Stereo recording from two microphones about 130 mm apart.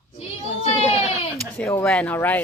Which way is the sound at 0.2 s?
55° left (ahead or behind).